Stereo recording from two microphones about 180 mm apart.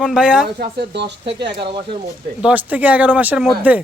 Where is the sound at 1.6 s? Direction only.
30° right (ahead or behind).